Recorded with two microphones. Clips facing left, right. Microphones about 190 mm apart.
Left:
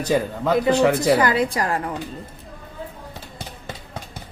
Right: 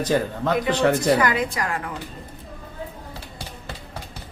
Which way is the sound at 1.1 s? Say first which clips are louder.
Left 2 dB; 35° left (ahead or behind).